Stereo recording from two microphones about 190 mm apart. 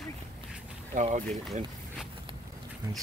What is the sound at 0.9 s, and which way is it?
Speech, 40° right (ahead or behind).